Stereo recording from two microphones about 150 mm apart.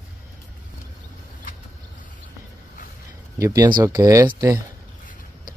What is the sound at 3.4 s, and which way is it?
Speech, 20° right (ahead or behind).